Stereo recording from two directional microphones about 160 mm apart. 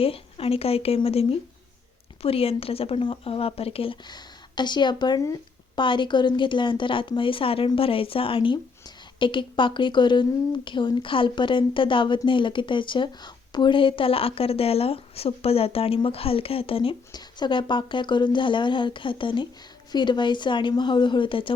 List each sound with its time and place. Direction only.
0.0 s a woman's voice: 35° left (ahead or behind)